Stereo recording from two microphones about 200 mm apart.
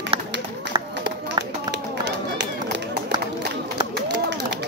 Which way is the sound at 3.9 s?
60° right (ahead or behind).